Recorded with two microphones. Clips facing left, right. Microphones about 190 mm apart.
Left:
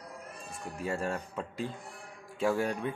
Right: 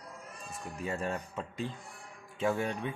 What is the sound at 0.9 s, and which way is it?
A man's voice, 5° right (ahead or behind).